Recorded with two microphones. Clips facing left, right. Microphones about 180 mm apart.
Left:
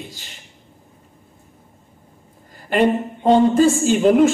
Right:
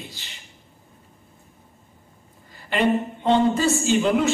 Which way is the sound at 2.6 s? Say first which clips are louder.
Left 4 dB; 45° left (ahead or behind).